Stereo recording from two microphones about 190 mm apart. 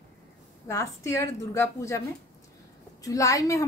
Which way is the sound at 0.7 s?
15° left (ahead or behind).